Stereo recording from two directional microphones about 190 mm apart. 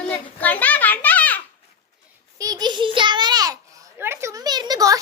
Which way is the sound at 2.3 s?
20° right (ahead or behind).